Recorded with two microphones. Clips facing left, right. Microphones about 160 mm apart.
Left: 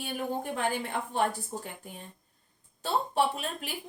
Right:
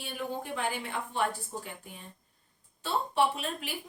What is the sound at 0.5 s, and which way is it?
A woman's voice, 45° left (ahead or behind).